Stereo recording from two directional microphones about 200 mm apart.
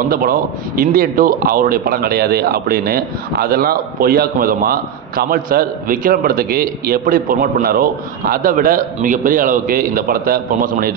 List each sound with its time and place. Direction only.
0.1 s a man's voice: 45° right (ahead or behind)